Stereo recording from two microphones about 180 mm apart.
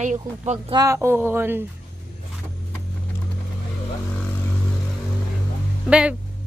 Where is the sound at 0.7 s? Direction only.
15° right (ahead or behind).